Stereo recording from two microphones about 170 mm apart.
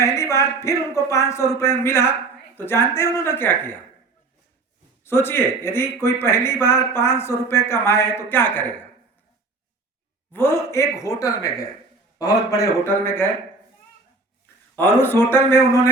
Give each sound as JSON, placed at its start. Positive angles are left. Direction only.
{"t": 0.0, "sound": "speech", "side_deg": 15}
{"t": 5.0, "sound": "speech", "side_deg": 15}
{"t": 10.3, "sound": "speech", "side_deg": 15}
{"t": 14.8, "sound": "speech", "side_deg": 15}